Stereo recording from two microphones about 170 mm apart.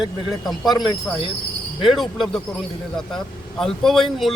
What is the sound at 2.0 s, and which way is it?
Speech, centre (ahead or behind).